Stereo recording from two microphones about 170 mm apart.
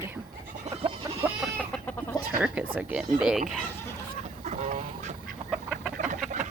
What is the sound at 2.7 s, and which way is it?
Speech, 5° right (ahead or behind).